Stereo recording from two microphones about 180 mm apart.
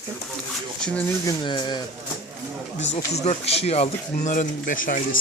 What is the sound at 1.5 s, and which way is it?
Speech, 25° left (ahead or behind).